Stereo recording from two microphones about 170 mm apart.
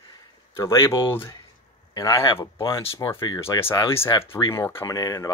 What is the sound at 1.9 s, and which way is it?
Speech, 20° left (ahead or behind).